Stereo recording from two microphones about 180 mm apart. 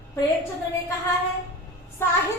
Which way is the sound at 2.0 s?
15° left (ahead or behind).